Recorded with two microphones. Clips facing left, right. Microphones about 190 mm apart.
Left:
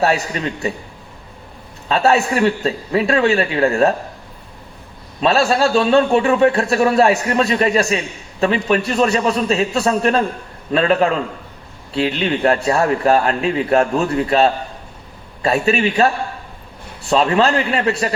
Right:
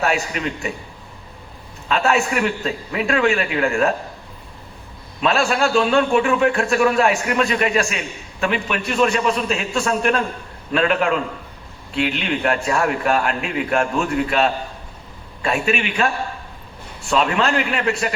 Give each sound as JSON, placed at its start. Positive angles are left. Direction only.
{"t": 0.0, "sound": "a man's voice", "side_deg": 35}
{"t": 1.9, "sound": "a man's voice", "side_deg": 35}
{"t": 5.2, "sound": "a man's voice", "side_deg": 35}